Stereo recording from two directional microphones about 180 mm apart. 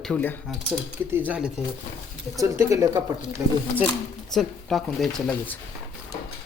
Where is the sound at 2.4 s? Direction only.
15° right (ahead or behind).